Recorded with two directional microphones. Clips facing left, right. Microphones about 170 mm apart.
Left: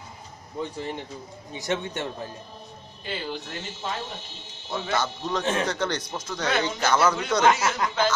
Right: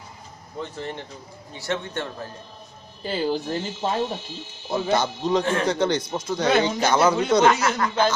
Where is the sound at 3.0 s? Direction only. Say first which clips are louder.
Right 8 dB; 35° right (ahead or behind).